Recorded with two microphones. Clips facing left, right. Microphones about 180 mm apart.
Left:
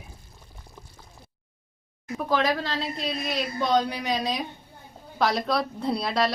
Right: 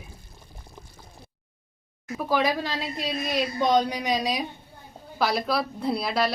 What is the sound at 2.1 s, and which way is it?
A woman's voice, 10° right (ahead or behind).